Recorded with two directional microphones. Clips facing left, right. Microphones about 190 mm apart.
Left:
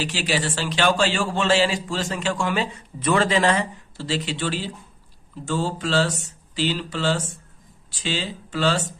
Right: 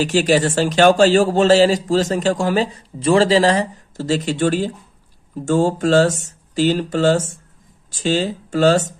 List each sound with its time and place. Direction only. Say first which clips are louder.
0.0 s speech: right 10 dB; 45° right (ahead or behind)